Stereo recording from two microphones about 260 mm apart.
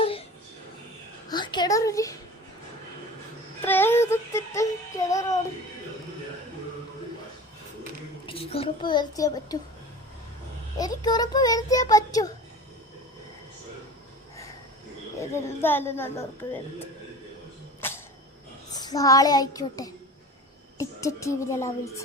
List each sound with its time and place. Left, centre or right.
1.3 s a woman's voice: centre
3.6 s music: centre
8.3 s a child's voice: left
10.8 s a child's voice: centre
15.2 s a child's voice: centre
17.7 s a sound: centre
18.7 s a child's voice: centre